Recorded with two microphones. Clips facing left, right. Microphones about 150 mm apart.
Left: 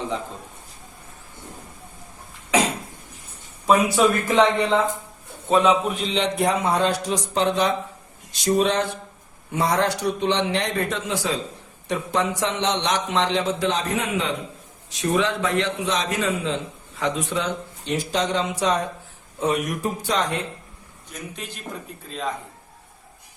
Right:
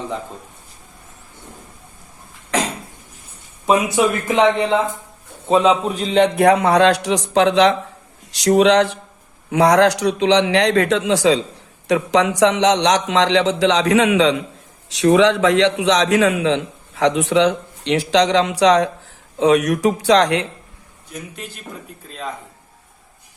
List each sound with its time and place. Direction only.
3.7 s speech: 20° right (ahead or behind)
5.5 s a man's voice: 30° right (ahead or behind); by 20.5 s 90° right